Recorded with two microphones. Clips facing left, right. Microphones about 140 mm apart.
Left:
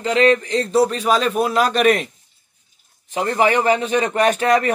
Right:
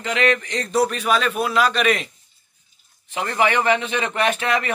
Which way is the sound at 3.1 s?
35° left (ahead or behind).